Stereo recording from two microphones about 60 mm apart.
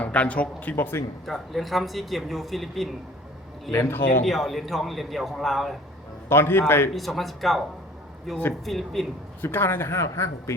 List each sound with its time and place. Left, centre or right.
0.0 s speech: left
0.8 s a man's voice: left
1.3 s speech: centre
3.7 s speech: left
4.3 s speech: centre
6.2 s a man's voice: left
6.9 s speech: centre
9.4 s speech: left